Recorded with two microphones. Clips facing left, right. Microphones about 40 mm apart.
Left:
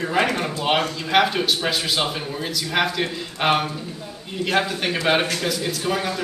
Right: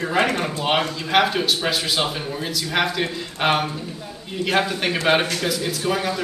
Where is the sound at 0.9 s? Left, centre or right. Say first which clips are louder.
Even; centre.